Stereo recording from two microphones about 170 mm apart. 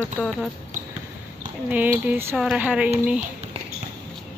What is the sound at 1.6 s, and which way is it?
Speech, 10° right (ahead or behind).